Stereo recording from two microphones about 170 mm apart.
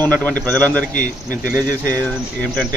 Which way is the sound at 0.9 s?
50° left (ahead or behind).